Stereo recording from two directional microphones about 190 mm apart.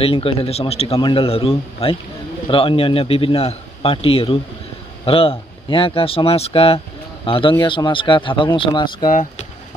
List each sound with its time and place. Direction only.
0.0 s a man's voice: 30° left (ahead or behind)
9.1 s speech: 40° left (ahead or behind)